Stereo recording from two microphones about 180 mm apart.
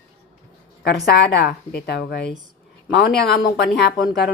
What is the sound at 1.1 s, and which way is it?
Speech, 70° left (ahead or behind).